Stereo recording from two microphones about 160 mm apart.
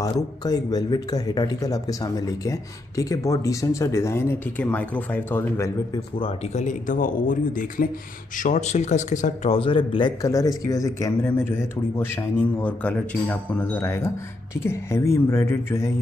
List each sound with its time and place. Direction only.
0.0 s a man's voice: 25° left (ahead or behind)
6.1 s speech: 35° left (ahead or behind)
6.6 s speech: 50° left (ahead or behind); by 15.9 s 15° left (ahead or behind)